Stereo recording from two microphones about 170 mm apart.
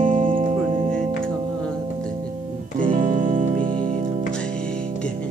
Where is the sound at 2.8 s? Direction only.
50° right (ahead or behind).